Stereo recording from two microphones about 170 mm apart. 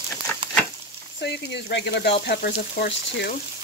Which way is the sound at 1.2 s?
85° left.